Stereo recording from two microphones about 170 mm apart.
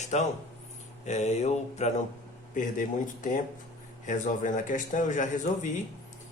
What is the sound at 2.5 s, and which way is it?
Speech, 50° left (ahead or behind).